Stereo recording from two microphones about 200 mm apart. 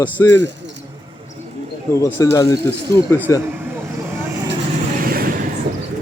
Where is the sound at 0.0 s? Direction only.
10° left (ahead or behind).